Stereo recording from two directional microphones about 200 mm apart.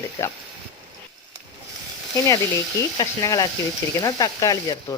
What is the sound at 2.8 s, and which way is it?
Speech, 15° left (ahead or behind).